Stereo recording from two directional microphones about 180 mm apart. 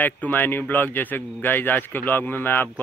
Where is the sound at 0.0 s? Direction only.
10° left (ahead or behind).